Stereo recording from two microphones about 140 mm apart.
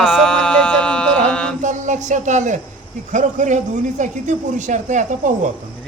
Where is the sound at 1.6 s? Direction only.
60° right (ahead or behind).